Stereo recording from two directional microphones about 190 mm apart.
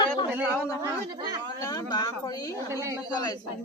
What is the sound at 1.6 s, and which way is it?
Speech, 20° left (ahead or behind).